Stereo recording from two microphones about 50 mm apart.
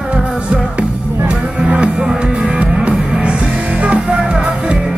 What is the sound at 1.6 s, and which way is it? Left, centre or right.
Music, centre.